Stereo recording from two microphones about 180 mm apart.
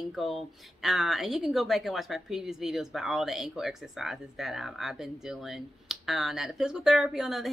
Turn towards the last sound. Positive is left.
turn(degrees=0)  # may be behind; listen again after turning